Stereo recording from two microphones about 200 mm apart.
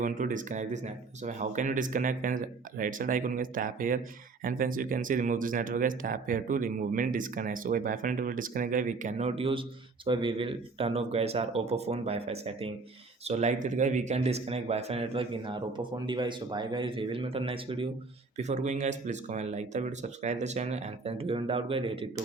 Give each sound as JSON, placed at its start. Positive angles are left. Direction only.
{"t": 0.0, "sound": "speech", "side_deg": -40}